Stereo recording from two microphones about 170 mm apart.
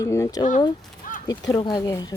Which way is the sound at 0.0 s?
20° left (ahead or behind).